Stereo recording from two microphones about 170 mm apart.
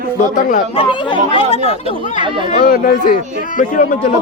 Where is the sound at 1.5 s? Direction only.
40° right (ahead or behind).